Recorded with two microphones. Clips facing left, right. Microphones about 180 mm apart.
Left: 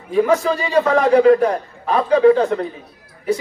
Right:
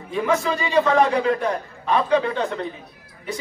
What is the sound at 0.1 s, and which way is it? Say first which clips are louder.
A man's voice: left 6 dB; 40° left (ahead or behind).